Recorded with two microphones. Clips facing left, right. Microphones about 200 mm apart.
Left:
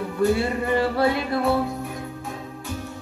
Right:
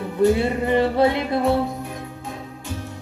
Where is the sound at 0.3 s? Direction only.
20° right (ahead or behind).